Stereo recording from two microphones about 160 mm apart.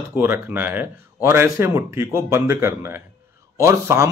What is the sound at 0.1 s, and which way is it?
A man's voice, 15° right (ahead or behind).